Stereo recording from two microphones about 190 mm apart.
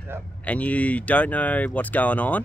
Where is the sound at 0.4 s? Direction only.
5° left (ahead or behind).